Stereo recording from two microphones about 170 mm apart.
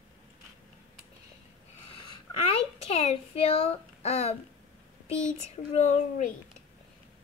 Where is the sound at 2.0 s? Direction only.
35° left (ahead or behind).